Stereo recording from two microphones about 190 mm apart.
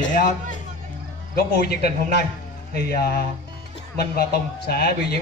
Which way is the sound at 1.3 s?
55° left (ahead or behind).